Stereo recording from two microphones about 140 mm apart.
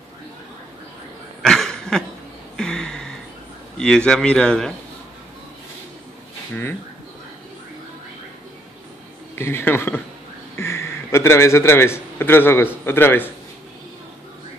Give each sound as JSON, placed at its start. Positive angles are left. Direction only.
{"t": 1.4, "sound": "a sound", "side_deg": 5}
{"t": 3.7, "sound": "a man's voice", "side_deg": 5}
{"t": 6.5, "sound": "speech", "side_deg": 15}
{"t": 9.3, "sound": "a man's voice", "side_deg": 15}